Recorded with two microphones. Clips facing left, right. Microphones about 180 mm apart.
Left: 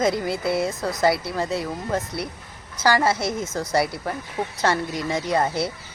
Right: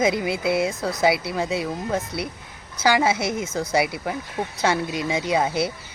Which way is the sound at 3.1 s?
20° right (ahead or behind).